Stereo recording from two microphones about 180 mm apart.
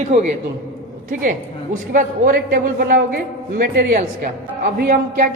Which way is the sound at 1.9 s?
50° right (ahead or behind).